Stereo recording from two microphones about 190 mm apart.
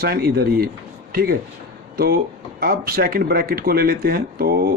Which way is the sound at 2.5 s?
50° right (ahead or behind).